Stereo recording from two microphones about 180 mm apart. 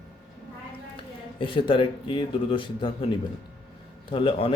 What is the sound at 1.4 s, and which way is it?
Speech, 30° left (ahead or behind).